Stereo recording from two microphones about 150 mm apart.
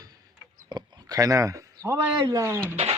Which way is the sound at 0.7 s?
30° right (ahead or behind).